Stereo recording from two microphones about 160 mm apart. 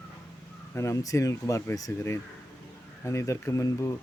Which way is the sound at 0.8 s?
20° left (ahead or behind).